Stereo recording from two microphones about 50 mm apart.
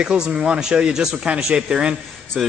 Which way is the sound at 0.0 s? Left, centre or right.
Centre.